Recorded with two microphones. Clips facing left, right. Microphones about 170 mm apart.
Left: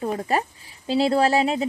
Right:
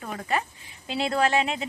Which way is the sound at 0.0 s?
35° left (ahead or behind).